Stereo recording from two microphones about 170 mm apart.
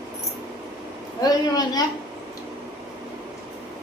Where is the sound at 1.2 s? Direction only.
25° left (ahead or behind).